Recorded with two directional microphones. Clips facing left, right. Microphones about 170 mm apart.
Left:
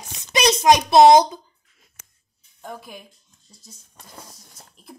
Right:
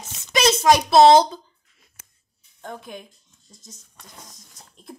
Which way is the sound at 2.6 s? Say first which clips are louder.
Right 1 dB; 5° left (ahead or behind).